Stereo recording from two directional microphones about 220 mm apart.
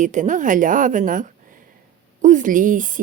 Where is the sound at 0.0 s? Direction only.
35° right (ahead or behind).